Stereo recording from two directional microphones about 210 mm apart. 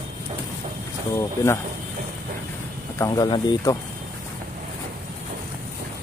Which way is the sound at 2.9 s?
15° left (ahead or behind).